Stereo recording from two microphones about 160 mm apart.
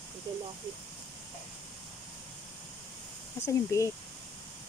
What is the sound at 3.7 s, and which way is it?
Speech, 20° left (ahead or behind).